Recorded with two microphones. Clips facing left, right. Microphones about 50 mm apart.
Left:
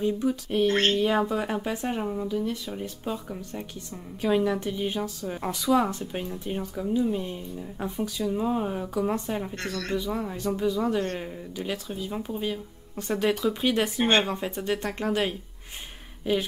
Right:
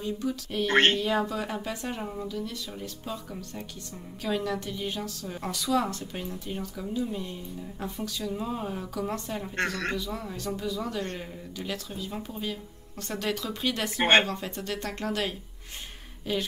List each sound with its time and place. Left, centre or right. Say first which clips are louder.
0.0 s speech: left 5 dB; centre
0.7 s a man's voice: right 3 dB; right
0.9 s speech: left 4 dB; left
9.6 s a man's voice: right 2 dB; right
9.9 s speech: left 5 dB; left